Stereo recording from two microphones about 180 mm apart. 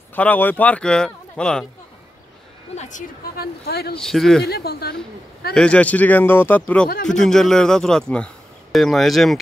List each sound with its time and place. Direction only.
0.1 s speech: 10° left (ahead or behind)
2.7 s a woman's voice: 40° left (ahead or behind); by 3.9 s 60° left (ahead or behind)
3.9 s a man's voice: centre (ahead or behind)
4.5 s a woman's voice: 60° left (ahead or behind)
5.5 s a man's voice: 5° left (ahead or behind)